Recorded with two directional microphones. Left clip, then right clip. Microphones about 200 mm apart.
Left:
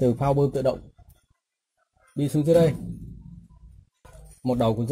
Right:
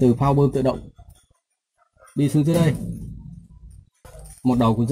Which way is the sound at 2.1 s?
25° left (ahead or behind).